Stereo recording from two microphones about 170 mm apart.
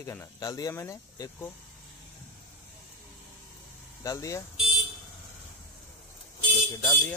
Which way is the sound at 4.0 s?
20° left (ahead or behind).